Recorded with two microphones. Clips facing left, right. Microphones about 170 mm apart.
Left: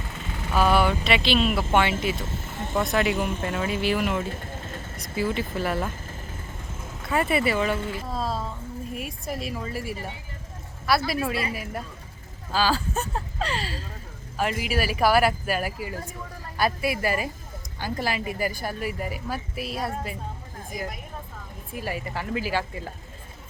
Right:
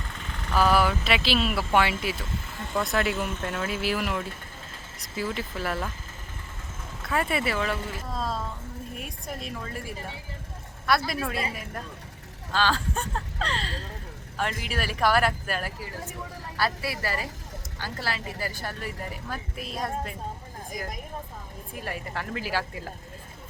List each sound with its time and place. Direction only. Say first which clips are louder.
0.1 s vehicle: left 1 dB; 5° left (ahead or behind)
0.8 s speech: left 2 dB; centre (ahead or behind)
3.2 s speech: left 3 dB; 10° left (ahead or behind)
3.7 s speech: left 4 dB; centre (ahead or behind)
7.0 s speech: left 4 dB; 5° left (ahead or behind)
21.8 s speech: left 3 dB; 5° left (ahead or behind)